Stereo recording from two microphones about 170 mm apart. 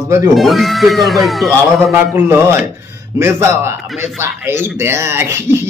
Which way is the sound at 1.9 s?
10° right (ahead or behind).